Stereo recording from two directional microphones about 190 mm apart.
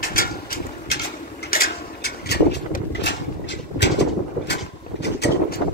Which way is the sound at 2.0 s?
60° left (ahead or behind).